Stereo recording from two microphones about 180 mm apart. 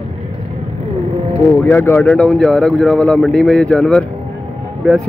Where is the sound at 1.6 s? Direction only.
10° left (ahead or behind).